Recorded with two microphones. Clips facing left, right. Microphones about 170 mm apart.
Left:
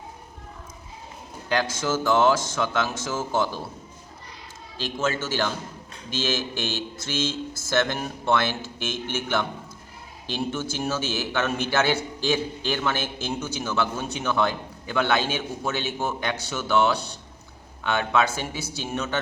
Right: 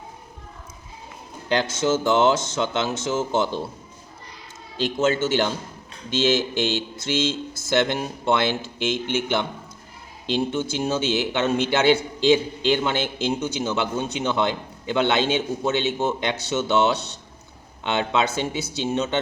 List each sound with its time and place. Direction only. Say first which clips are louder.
1.5 s a man's voice: right 4 dB; 25° right (ahead or behind)
4.8 s a man's voice: right 6 dB; 20° right (ahead or behind)